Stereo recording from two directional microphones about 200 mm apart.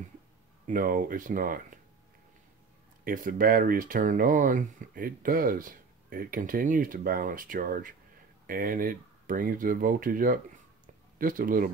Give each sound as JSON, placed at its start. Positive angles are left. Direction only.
{"t": 0.7, "sound": "speech", "side_deg": -45}
{"t": 3.1, "sound": "speech", "side_deg": -45}